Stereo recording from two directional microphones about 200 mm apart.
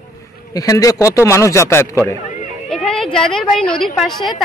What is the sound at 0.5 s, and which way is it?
A man's voice, 15° left (ahead or behind).